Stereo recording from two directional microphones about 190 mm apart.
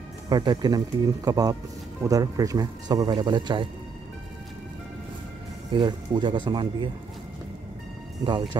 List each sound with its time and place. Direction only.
0.3 s speech: 20° right (ahead or behind)
5.7 s speech: 25° right (ahead or behind)
8.2 s speech: 25° right (ahead or behind)